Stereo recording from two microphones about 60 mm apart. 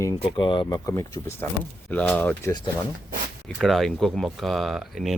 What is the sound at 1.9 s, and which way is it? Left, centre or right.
Speech, left.